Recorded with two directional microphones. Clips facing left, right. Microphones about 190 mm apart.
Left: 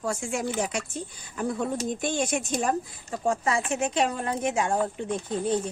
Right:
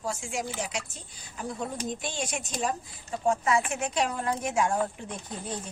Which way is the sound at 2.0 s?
50° left (ahead or behind).